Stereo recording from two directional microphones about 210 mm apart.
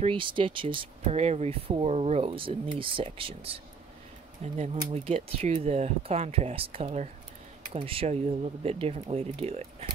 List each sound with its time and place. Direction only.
0.0 s speech: 25° right (ahead or behind)